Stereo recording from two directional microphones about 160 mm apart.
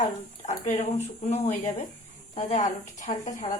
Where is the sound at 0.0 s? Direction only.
45° left (ahead or behind).